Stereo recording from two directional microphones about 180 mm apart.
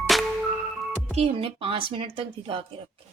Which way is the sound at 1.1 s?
30° right (ahead or behind).